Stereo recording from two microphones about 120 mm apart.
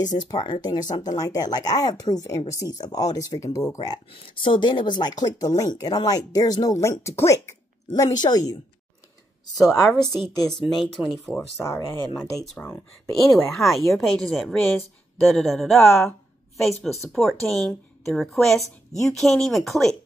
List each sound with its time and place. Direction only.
0.4 s speech: 40° left (ahead or behind)
0.9 s speech: 65° left (ahead or behind)
1.2 s speech: 30° left (ahead or behind)
4.1 s speech: 45° left (ahead or behind)
9.7 s a woman's voice: centre (ahead or behind)
11.3 s speech: 25° left (ahead or behind)
12.2 s a woman's voice: 5° left (ahead or behind)